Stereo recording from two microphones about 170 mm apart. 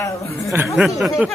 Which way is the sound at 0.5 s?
10° right (ahead or behind).